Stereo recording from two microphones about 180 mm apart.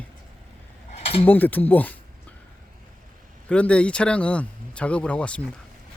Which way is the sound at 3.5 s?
5° left (ahead or behind).